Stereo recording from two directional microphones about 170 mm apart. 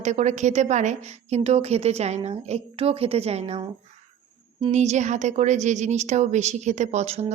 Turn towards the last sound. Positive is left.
turn(degrees=-40)  # may be behind; listen again after turning